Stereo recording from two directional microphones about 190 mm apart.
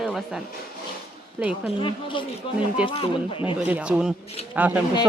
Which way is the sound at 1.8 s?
25° left (ahead or behind).